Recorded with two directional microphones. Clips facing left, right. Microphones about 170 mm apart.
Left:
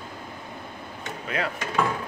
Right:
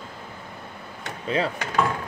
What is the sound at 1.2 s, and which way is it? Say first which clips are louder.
Speech: right 5 dB; 30° right (ahead or behind).